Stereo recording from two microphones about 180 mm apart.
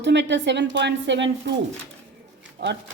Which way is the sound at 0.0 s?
80° right.